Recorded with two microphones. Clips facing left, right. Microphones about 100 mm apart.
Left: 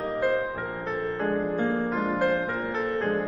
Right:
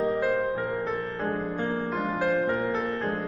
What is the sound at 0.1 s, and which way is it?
Music, centre (ahead or behind).